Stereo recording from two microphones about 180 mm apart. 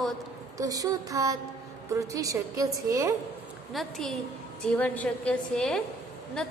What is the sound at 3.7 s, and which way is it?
A woman's voice, centre (ahead or behind).